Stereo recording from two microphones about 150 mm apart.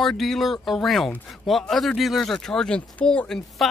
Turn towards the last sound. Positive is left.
turn(degrees=5)  # may be behind; listen again after turning